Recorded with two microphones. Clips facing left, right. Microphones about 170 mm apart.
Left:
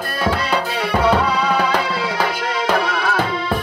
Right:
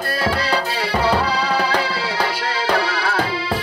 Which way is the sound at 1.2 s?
30° right (ahead or behind).